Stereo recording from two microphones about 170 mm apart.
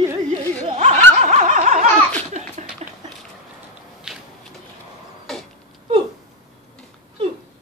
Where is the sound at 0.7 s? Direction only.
40° right (ahead or behind).